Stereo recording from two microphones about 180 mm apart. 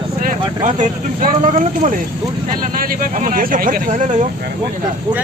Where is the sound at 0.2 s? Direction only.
45° right (ahead or behind).